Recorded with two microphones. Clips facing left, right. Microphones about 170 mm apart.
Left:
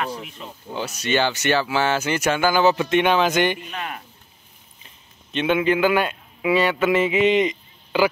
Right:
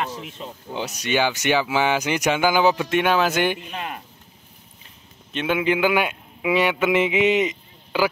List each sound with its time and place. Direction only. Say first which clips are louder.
0.7 s speech: left 1 dB; 15° right (ahead or behind)
3.7 s speech: even; 20° right (ahead or behind)
5.3 s a man's voice: left 2 dB; 5° right (ahead or behind)